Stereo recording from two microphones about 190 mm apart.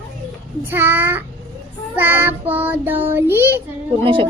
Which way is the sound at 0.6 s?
10° right (ahead or behind).